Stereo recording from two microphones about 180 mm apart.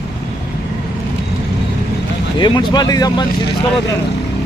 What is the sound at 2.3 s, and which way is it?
Speech, 25° left (ahead or behind).